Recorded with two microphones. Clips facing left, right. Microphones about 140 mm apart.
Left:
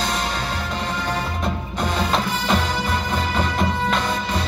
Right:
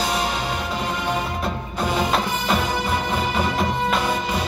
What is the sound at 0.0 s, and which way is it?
Music, 10° right (ahead or behind).